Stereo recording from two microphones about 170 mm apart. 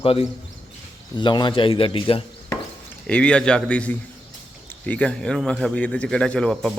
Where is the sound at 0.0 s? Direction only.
35° left (ahead or behind).